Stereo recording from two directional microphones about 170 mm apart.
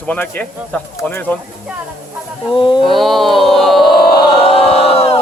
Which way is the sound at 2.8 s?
Centre (ahead or behind).